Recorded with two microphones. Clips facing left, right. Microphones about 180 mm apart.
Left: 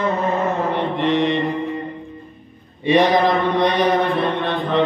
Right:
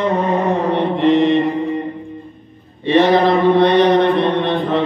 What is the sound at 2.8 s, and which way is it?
Mantra, 15° left (ahead or behind).